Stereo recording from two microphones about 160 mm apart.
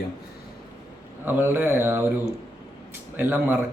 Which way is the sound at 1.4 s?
15° right (ahead or behind).